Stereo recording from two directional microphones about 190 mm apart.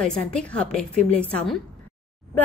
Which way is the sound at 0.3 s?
5° left (ahead or behind).